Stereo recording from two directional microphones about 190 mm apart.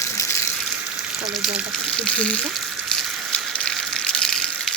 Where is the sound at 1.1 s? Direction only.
Centre (ahead or behind).